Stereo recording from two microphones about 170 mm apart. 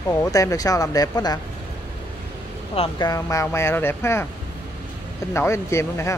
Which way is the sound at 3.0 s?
20° left (ahead or behind).